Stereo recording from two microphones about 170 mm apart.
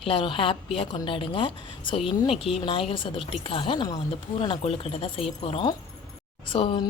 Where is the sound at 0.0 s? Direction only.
30° left (ahead or behind).